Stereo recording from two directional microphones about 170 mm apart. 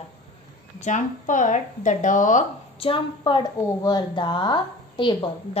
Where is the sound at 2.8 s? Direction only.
30° left (ahead or behind).